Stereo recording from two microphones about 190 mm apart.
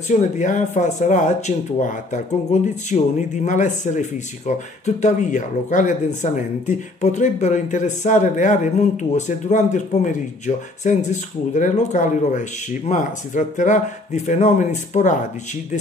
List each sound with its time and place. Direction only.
0.1 s speech: 40° left (ahead or behind)